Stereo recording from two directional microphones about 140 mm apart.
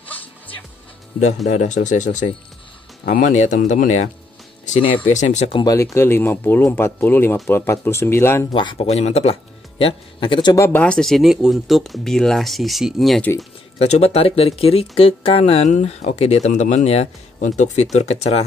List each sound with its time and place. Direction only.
1.2 s speech: 55° left (ahead or behind)
4.6 s speech: 45° left (ahead or behind)
5.1 s speech: 55° left (ahead or behind)
5.5 s speech: 30° left (ahead or behind)
8.5 s speech: 40° left (ahead or behind)
10.5 s speech: 20° left (ahead or behind)
10.8 s speech: 5° left (ahead or behind)
13.7 s speech: 50° left (ahead or behind)